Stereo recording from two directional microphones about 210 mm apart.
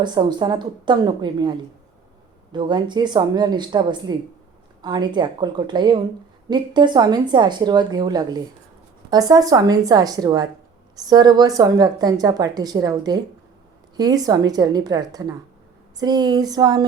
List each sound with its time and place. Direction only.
0.0 s a woman's voice: 20° right (ahead or behind)